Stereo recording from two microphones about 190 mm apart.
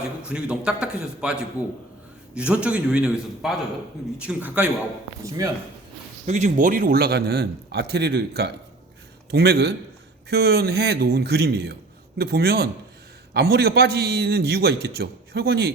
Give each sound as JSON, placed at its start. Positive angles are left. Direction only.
{"t": 0.3, "sound": "a man's voice", "side_deg": -5}
{"t": 6.2, "sound": "a man's voice", "side_deg": -40}